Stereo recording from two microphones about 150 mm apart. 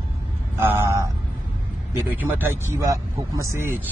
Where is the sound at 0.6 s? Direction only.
20° right (ahead or behind).